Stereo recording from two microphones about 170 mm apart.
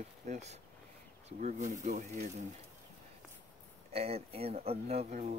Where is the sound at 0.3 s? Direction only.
40° right (ahead or behind).